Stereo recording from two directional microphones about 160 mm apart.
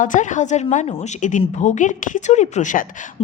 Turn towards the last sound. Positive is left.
turn(degrees=55)  # may be behind; listen again after turning